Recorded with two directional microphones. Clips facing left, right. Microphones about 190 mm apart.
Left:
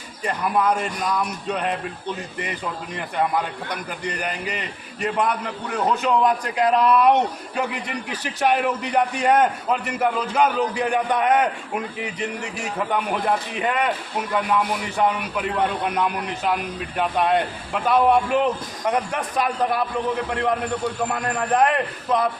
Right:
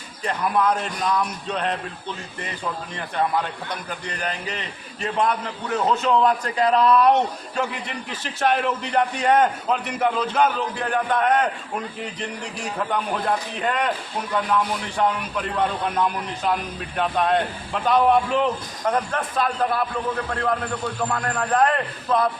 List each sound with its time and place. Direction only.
0.3 s a man's voice: 10° left (ahead or behind)
3.7 s a man's voice: 10° left (ahead or behind)